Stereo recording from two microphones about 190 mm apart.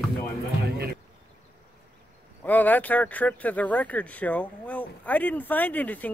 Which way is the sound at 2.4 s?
10° left (ahead or behind).